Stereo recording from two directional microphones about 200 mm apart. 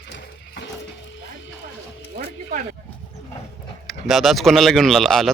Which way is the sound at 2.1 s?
45° right (ahead or behind).